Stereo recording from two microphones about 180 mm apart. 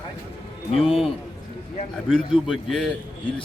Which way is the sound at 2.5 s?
Centre (ahead or behind).